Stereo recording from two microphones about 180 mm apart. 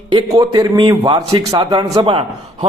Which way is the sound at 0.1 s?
25° right (ahead or behind).